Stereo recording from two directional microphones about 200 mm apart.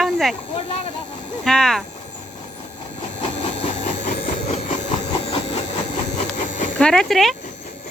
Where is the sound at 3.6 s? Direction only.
35° left (ahead or behind).